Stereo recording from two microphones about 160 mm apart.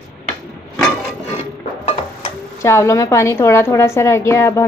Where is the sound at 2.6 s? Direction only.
20° left (ahead or behind).